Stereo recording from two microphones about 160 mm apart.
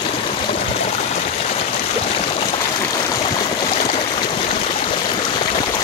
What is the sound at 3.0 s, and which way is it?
Stream, 25° left (ahead or behind).